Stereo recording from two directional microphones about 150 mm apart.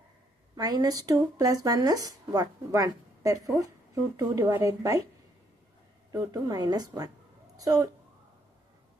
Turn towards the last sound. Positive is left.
turn(degrees=-25)  # may be behind; listen again after turning